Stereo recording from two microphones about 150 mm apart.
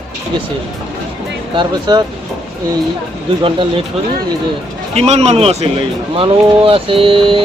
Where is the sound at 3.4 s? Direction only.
35° right (ahead or behind).